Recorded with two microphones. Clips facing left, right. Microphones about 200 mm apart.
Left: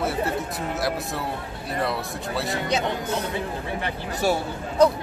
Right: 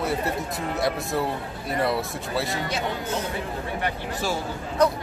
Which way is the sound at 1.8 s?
Centre (ahead or behind).